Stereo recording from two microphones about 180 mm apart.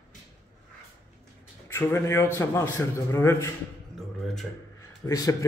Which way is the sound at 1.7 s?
15° left (ahead or behind).